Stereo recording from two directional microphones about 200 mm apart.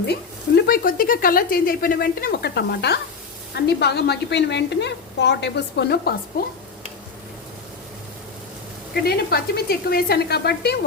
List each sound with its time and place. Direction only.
0.1 s a woman's voice: 50° left (ahead or behind)
9.0 s speech: 50° left (ahead or behind)